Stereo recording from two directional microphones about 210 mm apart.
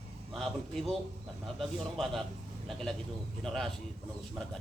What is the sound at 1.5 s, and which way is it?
Speech, centre (ahead or behind).